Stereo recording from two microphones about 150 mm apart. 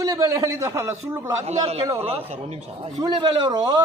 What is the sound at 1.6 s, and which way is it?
A man's voice, 45° right (ahead or behind).